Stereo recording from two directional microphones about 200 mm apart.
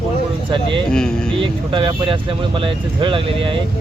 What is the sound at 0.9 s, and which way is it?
Speech, 5° left (ahead or behind).